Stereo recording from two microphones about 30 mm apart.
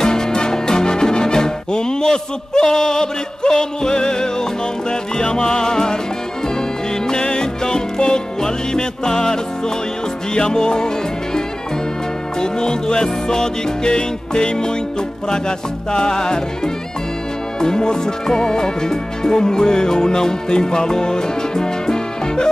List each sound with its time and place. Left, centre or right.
0.0 s music: left
7.1 s music: left
12.4 s music: left